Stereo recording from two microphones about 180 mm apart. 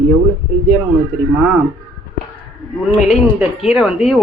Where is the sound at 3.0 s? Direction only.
5° right (ahead or behind).